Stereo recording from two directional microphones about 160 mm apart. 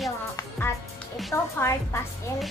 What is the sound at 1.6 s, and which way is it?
Speech, 15° left (ahead or behind).